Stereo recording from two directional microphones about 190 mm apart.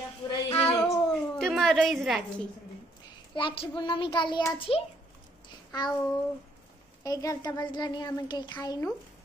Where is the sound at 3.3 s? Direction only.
25° left (ahead or behind).